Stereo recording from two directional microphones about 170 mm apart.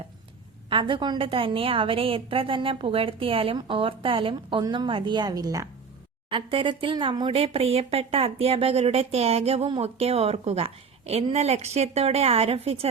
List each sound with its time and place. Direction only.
0.7 s speech: 30° right (ahead or behind)